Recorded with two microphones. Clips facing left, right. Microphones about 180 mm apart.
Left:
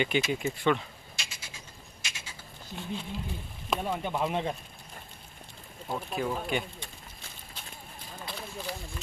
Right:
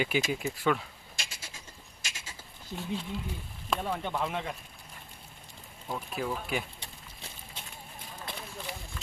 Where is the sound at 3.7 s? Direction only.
10° left (ahead or behind).